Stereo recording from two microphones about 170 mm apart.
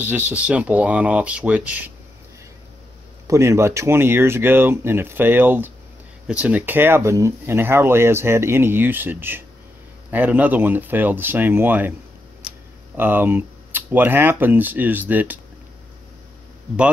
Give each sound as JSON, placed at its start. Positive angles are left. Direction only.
{"t": 0.0, "sound": "speech", "side_deg": -10}
{"t": 3.3, "sound": "speech", "side_deg": -15}
{"t": 12.9, "sound": "speech", "side_deg": -10}